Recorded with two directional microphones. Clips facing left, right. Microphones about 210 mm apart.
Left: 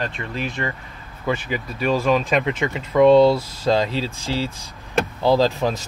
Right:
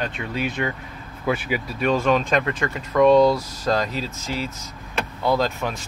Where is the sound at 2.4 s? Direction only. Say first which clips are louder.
Left 2 dB; 20° left (ahead or behind).